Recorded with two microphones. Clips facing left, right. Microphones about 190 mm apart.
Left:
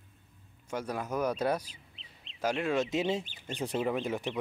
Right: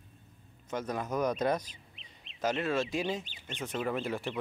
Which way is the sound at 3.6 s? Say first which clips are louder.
Left 3 dB; 35° left (ahead or behind).